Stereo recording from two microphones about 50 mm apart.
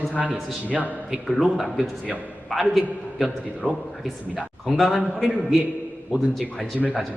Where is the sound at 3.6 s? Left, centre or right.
Left.